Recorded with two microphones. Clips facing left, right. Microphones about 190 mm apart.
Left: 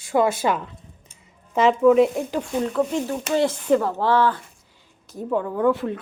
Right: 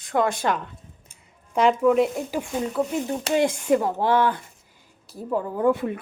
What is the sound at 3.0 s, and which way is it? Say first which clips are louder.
Speech: even; 15° right (ahead or behind).